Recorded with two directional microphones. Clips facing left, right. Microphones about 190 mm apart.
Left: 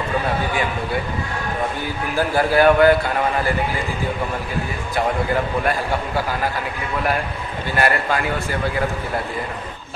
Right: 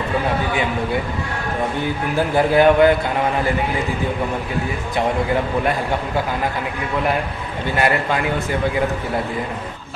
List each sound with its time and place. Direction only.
2.1 s a man's voice: 20° right (ahead or behind)
7.7 s a man's voice: 20° right (ahead or behind)